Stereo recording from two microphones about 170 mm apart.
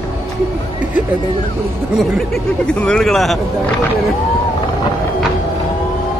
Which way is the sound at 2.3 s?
5° left (ahead or behind).